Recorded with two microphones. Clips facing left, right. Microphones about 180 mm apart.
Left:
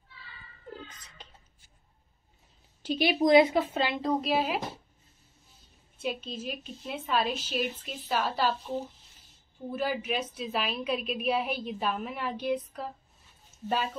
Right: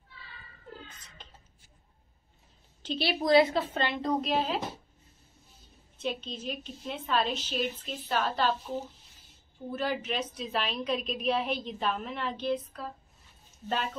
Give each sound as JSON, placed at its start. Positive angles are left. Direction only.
{"t": 0.8, "sound": "a sound", "side_deg": 10}
{"t": 2.8, "sound": "a woman's voice", "side_deg": 15}
{"t": 3.7, "sound": "a woman's voice", "side_deg": 5}
{"t": 5.9, "sound": "a woman's voice", "side_deg": 5}
{"t": 9.7, "sound": "a woman's voice", "side_deg": 10}